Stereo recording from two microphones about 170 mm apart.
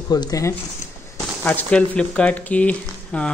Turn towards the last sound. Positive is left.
turn(degrees=5)  # may be behind; listen again after turning